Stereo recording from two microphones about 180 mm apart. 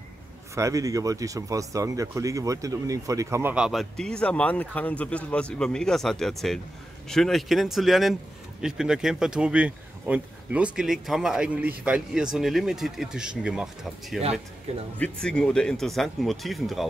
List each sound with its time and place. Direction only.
0.6 s speech: 20° right (ahead or behind)
3.5 s speech: centre (ahead or behind)